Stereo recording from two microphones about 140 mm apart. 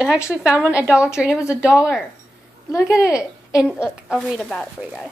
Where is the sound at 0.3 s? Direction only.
10° right (ahead or behind).